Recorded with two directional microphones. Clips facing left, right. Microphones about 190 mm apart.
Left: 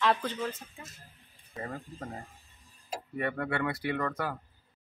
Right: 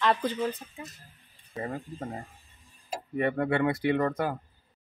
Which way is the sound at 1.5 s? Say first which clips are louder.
Right 5 dB; 20° right (ahead or behind).